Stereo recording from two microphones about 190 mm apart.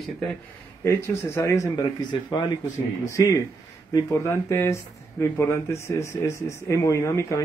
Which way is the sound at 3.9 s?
15° left (ahead or behind).